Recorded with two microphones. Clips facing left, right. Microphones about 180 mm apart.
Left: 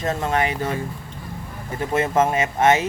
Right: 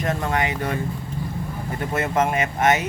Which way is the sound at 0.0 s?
25° left (ahead or behind).